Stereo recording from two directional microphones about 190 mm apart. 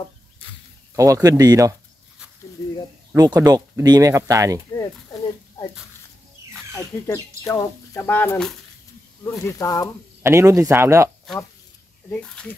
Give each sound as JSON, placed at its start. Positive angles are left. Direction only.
{"t": 0.9, "sound": "speech", "side_deg": -15}
{"t": 2.6, "sound": "a sound", "side_deg": 20}
{"t": 3.2, "sound": "speech", "side_deg": -20}
{"t": 6.7, "sound": "speech", "side_deg": 15}
{"t": 10.2, "sound": "speech", "side_deg": -15}
{"t": 12.1, "sound": "speech", "side_deg": 5}